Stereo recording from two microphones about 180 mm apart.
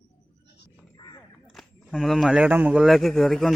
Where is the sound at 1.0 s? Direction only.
25° left (ahead or behind).